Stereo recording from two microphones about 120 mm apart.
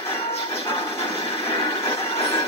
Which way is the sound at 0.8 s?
55° left (ahead or behind).